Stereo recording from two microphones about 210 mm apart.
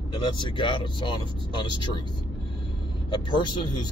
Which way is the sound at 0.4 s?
25° left (ahead or behind).